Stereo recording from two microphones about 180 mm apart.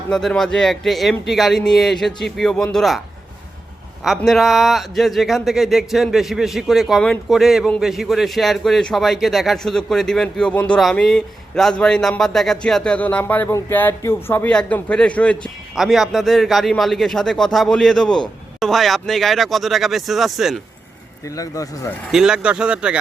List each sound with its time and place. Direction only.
0.1 s a man's voice: centre (ahead or behind)
4.0 s a man's voice: centre (ahead or behind)
21.2 s speech: 20° left (ahead or behind)
22.1 s a man's voice: 5° right (ahead or behind)